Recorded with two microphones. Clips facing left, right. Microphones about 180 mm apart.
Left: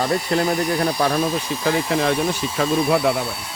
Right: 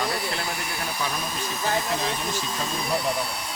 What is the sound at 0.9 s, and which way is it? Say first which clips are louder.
Speech: left 10 dB; 65° left (ahead or behind).